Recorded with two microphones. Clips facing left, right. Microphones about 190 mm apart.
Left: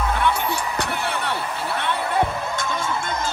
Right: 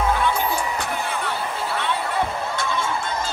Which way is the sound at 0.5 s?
70° left (ahead or behind).